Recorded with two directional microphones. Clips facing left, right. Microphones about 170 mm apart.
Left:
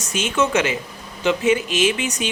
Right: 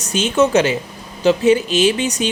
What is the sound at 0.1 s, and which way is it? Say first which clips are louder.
Speech: right 6 dB; 35° right (ahead or behind).